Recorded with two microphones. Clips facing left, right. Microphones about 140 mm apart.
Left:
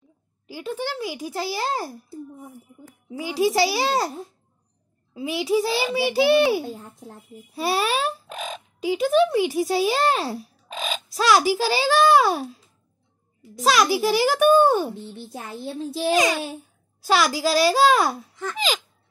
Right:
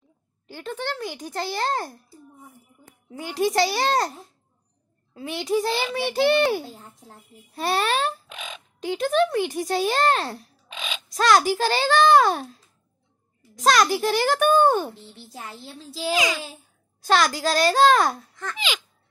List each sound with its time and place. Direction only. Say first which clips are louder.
0.5 s a child's voice: left 2 dB; 10° left (ahead or behind)
3.1 s speech: left 2 dB; 5° left (ahead or behind)
5.1 s a child's voice: left 2 dB; 5° left (ahead or behind)
8.3 s a sound: left 6 dB; 40° left (ahead or behind)
8.8 s speech: left 3 dB; 5° left (ahead or behind)
10.7 s crow: left 5 dB; 40° left (ahead or behind)
11.1 s speech: even; 5° left (ahead or behind)
13.6 s a child's voice: even; 5° left (ahead or behind)
15.1 s a child's voice: left 5 dB; 55° left (ahead or behind)
17.0 s a child's voice: even; 5° left (ahead or behind)